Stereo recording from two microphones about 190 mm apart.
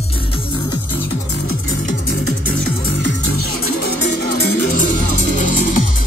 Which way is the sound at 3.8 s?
45° left (ahead or behind).